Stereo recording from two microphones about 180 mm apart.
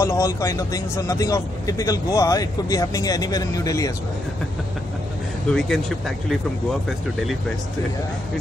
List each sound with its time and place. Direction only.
0.0 s speech: 15° left (ahead or behind)
5.5 s speech: centre (ahead or behind)